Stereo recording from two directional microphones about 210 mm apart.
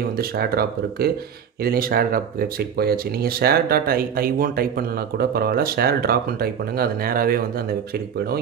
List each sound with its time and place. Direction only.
0.2 s speech: 45° right (ahead or behind)